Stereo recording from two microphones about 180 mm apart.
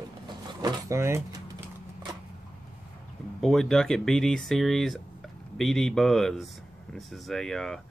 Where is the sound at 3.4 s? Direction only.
Centre (ahead or behind).